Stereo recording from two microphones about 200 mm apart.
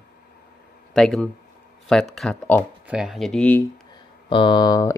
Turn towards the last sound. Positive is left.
turn(degrees=20)  # may be behind; listen again after turning